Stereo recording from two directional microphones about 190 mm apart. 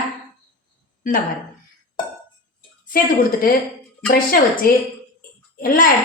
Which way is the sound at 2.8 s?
45° left (ahead or behind).